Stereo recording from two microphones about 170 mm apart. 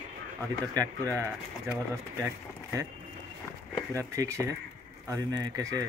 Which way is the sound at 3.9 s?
20° right (ahead or behind).